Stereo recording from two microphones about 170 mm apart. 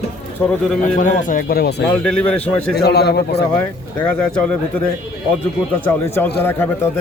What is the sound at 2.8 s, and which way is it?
Speech, 75° left (ahead or behind).